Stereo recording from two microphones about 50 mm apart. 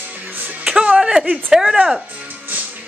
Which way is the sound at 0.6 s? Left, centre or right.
Centre.